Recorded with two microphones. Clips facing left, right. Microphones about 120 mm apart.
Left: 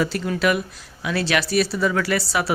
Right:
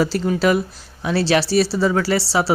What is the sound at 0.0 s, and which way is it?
Speech, 35° right (ahead or behind).